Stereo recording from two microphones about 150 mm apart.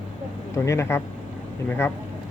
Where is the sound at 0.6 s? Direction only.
15° left (ahead or behind).